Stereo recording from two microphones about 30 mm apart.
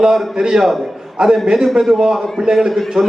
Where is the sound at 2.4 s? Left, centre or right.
Centre.